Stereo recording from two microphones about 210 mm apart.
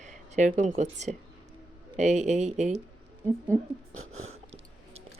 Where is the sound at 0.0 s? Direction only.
35° right (ahead or behind).